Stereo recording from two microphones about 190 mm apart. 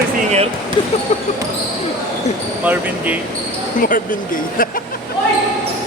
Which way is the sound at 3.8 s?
45° left (ahead or behind).